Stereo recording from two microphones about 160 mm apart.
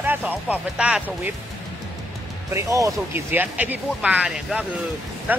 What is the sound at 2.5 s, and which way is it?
Speech, 20° right (ahead or behind).